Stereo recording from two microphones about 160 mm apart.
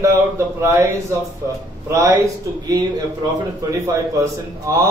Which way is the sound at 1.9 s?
20° right (ahead or behind).